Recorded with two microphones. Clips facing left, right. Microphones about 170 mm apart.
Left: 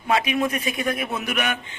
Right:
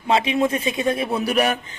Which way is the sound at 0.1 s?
25° right (ahead or behind).